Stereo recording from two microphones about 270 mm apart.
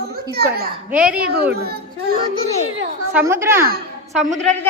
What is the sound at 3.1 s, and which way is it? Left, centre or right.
Speech, centre.